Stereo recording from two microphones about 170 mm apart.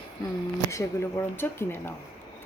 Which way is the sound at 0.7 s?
15° left (ahead or behind).